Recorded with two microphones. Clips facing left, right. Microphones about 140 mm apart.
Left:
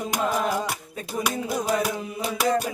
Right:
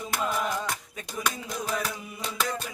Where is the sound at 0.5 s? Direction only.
10° left (ahead or behind).